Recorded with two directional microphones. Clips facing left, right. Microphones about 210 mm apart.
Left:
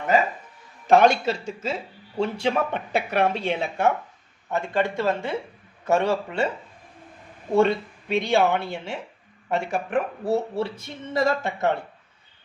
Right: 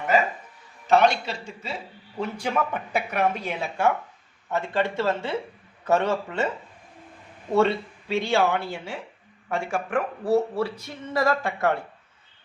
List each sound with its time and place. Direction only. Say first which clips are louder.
0.9 s a man's voice: left 3 dB; 50° left (ahead or behind)
2.1 s speech: left 3 dB; 30° left (ahead or behind)
4.5 s speech: left 1 dB; 15° left (ahead or behind)
7.5 s speech: left 2 dB; 15° left (ahead or behind)